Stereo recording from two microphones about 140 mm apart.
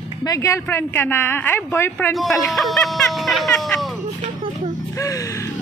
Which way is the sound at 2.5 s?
5° left (ahead or behind).